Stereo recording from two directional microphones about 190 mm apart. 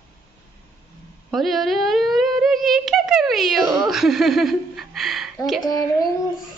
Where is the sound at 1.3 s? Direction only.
Centre (ahead or behind).